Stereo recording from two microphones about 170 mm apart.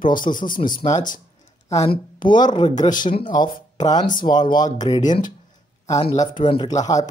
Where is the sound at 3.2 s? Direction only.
25° left (ahead or behind).